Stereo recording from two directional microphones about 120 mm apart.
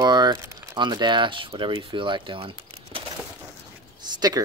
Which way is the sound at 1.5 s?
30° right (ahead or behind).